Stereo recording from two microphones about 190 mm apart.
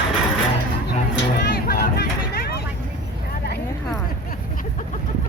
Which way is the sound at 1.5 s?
50° left (ahead or behind).